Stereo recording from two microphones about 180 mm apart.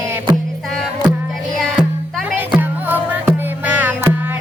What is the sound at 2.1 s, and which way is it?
Music, 5° right (ahead or behind).